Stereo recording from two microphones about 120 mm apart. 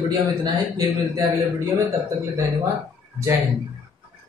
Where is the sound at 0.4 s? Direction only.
30° right (ahead or behind).